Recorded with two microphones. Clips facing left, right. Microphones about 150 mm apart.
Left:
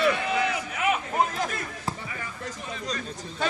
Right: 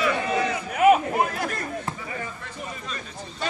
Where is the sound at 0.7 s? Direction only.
50° right (ahead or behind).